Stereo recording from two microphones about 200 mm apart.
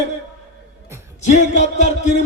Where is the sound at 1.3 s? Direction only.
35° left (ahead or behind).